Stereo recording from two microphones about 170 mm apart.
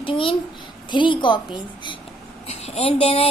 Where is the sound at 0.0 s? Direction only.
30° left (ahead or behind).